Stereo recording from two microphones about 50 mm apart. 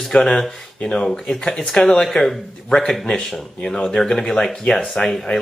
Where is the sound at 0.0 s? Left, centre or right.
Centre.